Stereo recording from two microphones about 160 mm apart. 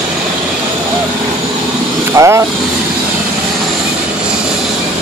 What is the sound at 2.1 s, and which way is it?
Speech, 20° right (ahead or behind).